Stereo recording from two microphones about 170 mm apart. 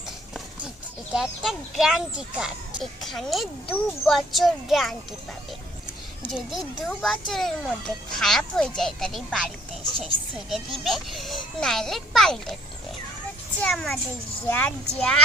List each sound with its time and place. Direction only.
1.1 s speech: centre (ahead or behind)
6.3 s speech: centre (ahead or behind)
13.6 s speech: 5° left (ahead or behind)